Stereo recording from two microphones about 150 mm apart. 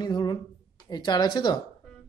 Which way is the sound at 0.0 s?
30° left (ahead or behind).